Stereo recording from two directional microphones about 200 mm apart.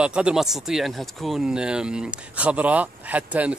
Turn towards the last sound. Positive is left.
turn(degrees=-5)  # may be behind; listen again after turning